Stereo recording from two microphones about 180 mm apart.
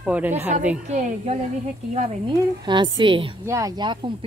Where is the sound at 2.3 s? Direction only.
25° right (ahead or behind).